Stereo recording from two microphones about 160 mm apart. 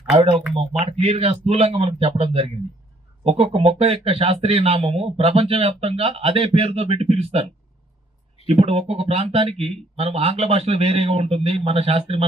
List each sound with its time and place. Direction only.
0.1 s speech: 35° right (ahead or behind)
8.4 s speech: 40° right (ahead or behind)